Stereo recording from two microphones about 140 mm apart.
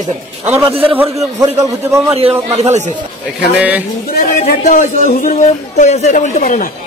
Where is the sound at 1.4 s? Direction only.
20° right (ahead or behind).